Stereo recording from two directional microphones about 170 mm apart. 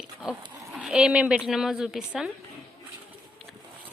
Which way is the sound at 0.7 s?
5° right (ahead or behind).